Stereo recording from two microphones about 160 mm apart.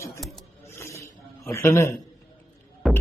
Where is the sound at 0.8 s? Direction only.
15° left (ahead or behind).